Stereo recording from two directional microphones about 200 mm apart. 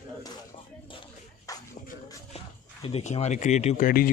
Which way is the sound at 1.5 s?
15° left (ahead or behind).